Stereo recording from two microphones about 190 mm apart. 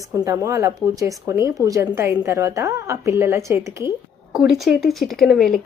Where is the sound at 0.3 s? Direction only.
15° right (ahead or behind).